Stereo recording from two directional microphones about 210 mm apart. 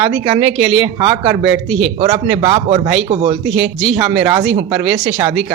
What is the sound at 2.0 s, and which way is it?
Speech, 25° right (ahead or behind).